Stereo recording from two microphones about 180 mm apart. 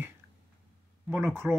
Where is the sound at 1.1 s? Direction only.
15° right (ahead or behind).